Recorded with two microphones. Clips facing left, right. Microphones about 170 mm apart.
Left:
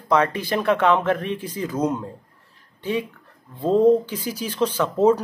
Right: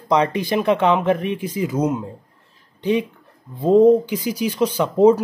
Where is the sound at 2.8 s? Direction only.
20° right (ahead or behind).